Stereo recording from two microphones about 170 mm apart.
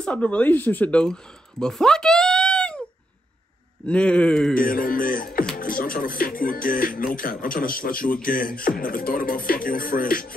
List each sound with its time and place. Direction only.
0.0 s speech: 5° left (ahead or behind)
3.8 s speech: 5° left (ahead or behind)
4.6 s music: 55° left (ahead or behind)
5.6 s speech: 55° left (ahead or behind)